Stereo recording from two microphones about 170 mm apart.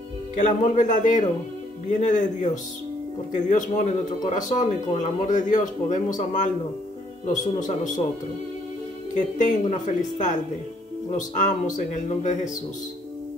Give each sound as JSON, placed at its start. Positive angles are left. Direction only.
{"t": 0.4, "sound": "a man's voice", "side_deg": 45}
{"t": 9.1, "sound": "a man's voice", "side_deg": 45}